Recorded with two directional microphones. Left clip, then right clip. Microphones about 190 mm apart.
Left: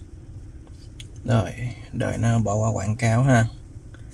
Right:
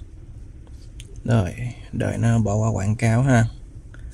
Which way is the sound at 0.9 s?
40° right (ahead or behind).